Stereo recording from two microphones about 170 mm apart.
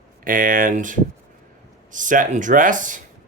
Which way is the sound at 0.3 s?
55° right (ahead or behind).